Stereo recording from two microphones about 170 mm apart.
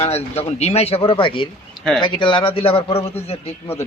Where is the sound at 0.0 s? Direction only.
40° left (ahead or behind).